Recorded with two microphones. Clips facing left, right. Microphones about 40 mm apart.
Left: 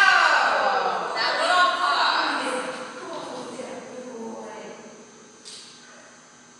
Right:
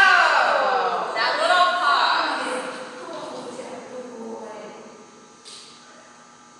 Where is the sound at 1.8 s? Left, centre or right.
Right.